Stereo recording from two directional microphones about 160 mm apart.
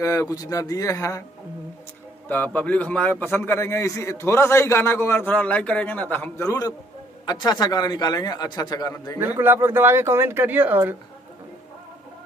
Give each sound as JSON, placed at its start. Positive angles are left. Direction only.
{"t": 0.0, "sound": "a man's voice", "side_deg": 20}
{"t": 2.2, "sound": "a man's voice", "side_deg": 10}
{"t": 9.2, "sound": "speech", "side_deg": -15}